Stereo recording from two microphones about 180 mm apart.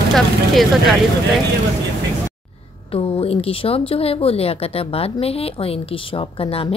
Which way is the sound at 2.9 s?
30° left (ahead or behind).